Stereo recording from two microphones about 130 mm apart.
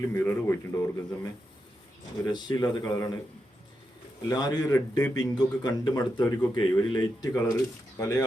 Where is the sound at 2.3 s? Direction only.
30° left (ahead or behind).